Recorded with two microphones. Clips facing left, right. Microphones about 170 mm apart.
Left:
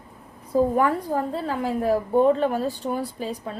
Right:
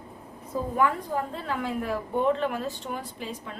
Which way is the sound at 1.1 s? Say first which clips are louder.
Left 5 dB; 35° left (ahead or behind).